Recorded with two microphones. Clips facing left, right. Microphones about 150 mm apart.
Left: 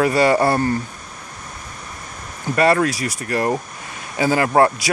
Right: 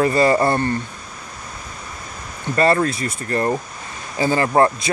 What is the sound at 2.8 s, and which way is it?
Speech, 90° left.